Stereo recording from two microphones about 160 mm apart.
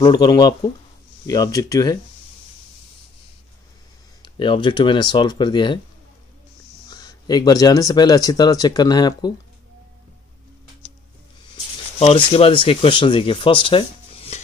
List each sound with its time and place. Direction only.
0.0 s speech: 25° left (ahead or behind)
4.2 s speech: 30° left (ahead or behind)
6.9 s speech: 25° left (ahead or behind)
12.0 s speech: 40° left (ahead or behind)